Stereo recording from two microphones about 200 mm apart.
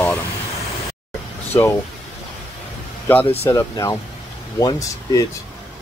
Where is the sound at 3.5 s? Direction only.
15° left (ahead or behind).